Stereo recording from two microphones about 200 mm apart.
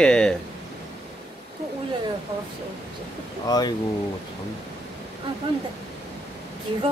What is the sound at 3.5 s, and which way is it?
Speech, 20° left (ahead or behind).